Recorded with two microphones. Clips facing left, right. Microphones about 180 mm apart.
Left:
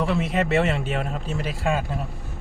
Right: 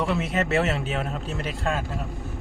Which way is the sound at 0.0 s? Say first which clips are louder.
Left 2 dB; centre (ahead or behind).